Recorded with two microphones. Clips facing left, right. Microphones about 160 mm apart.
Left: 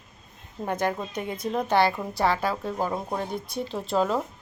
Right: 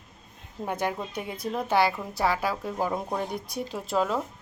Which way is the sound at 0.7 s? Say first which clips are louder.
Left 2 dB; 10° right (ahead or behind).